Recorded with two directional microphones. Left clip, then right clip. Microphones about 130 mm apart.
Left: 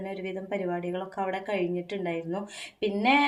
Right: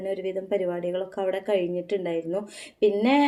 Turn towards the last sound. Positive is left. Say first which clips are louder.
# right 3 dB
turn(degrees=-25)  # may be behind; listen again after turning